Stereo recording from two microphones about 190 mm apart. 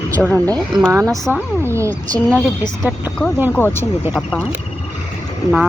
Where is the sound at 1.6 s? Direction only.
15° right (ahead or behind).